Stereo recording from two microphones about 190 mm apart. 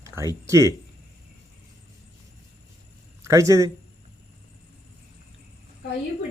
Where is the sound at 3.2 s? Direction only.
15° right (ahead or behind).